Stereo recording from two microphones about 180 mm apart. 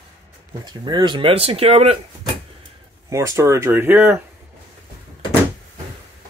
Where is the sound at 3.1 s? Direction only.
15° right (ahead or behind).